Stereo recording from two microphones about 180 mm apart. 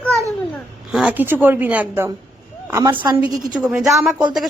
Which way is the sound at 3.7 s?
Centre (ahead or behind).